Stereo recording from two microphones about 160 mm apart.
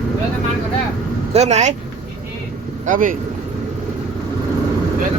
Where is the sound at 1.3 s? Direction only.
45° right (ahead or behind).